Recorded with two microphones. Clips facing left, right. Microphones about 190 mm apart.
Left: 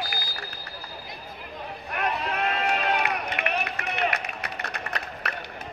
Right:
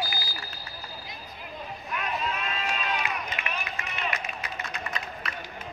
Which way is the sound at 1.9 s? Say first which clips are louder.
Left 3 dB; 65° left (ahead or behind).